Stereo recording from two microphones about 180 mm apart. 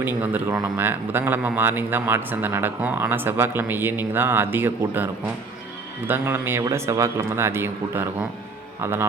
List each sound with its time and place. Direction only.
0.0 s a man's voice: 10° right (ahead or behind)
6.1 s a man's voice: 10° right (ahead or behind)